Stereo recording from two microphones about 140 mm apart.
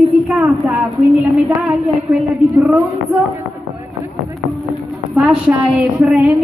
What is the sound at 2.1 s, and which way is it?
Speech, 15° right (ahead or behind).